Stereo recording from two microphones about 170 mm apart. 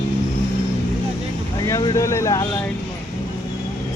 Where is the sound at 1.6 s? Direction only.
20° left (ahead or behind).